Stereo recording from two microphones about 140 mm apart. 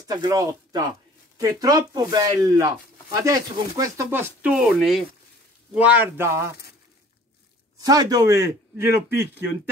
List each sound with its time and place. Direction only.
0.1 s speech: 25° right (ahead or behind)
7.8 s speech: 25° right (ahead or behind)